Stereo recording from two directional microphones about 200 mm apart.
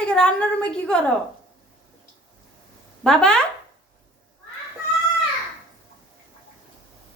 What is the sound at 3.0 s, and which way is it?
Speech, 5° left (ahead or behind).